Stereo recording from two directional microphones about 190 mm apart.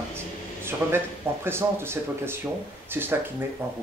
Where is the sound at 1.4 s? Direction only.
10° right (ahead or behind).